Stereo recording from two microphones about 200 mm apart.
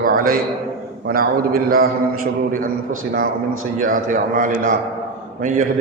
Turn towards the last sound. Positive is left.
turn(degrees=-40)  # may be behind; listen again after turning